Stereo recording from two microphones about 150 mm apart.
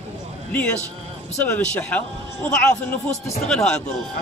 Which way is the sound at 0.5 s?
10° left (ahead or behind).